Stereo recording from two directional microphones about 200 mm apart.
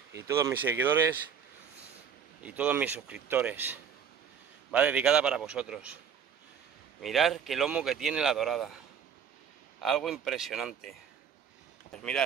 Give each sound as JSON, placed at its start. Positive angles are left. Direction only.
{"t": 0.1, "sound": "a man's voice", "side_deg": -15}
{"t": 2.4, "sound": "a man's voice", "side_deg": -5}
{"t": 7.0, "sound": "speech", "side_deg": 0}
{"t": 9.8, "sound": "speech", "side_deg": 0}